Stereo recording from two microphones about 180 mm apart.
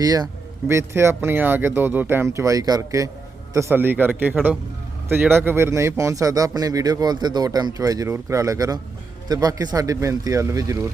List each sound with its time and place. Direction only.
0.0 s speech: 20° right (ahead or behind)